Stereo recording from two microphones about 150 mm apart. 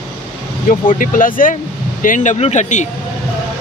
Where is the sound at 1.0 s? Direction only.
65° left (ahead or behind).